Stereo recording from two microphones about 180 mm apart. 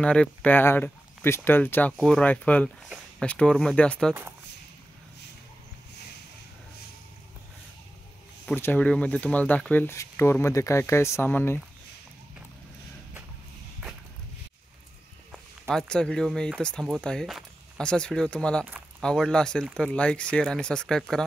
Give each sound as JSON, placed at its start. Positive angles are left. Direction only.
{"t": 0.0, "sound": "speech", "side_deg": 5}
{"t": 8.5, "sound": "speech", "side_deg": 10}
{"t": 15.7, "sound": "speech", "side_deg": 5}